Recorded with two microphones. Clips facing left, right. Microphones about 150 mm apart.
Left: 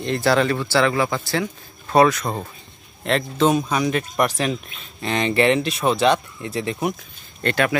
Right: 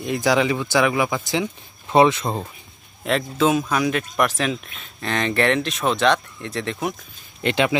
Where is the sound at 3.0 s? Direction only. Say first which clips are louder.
Left 1 dB; 5° right (ahead or behind).